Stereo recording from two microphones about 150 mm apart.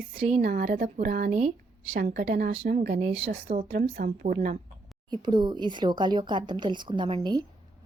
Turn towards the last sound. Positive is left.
turn(degrees=-30)  # may be behind; listen again after turning